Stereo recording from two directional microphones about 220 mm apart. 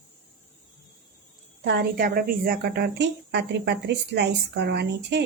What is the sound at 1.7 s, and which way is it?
A woman's voice, 45° right (ahead or behind).